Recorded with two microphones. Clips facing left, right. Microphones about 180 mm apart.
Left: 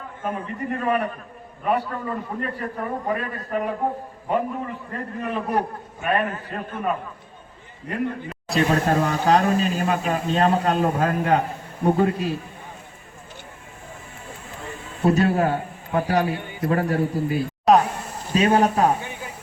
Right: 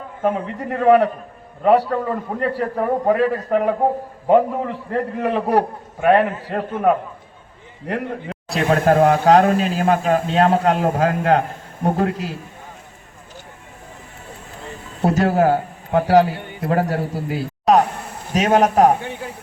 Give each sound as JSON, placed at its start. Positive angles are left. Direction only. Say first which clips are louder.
{"t": 0.2, "sound": "a man's voice", "louder": "right 7 dB", "side_deg": -80}
{"t": 8.7, "sound": "speech", "louder": "right 11 dB", "side_deg": -55}
{"t": 9.3, "sound": "speech", "louder": "right 5 dB", "side_deg": -75}
{"t": 9.9, "sound": "a man's voice", "louder": "right 5 dB", "side_deg": -90}
{"t": 15.0, "sound": "a man's voice", "louder": "right 3 dB", "side_deg": -90}
{"t": 17.7, "sound": "a sound", "louder": "right 2 dB", "side_deg": 0}
{"t": 18.3, "sound": "a man's voice", "louder": "right 3 dB", "side_deg": -80}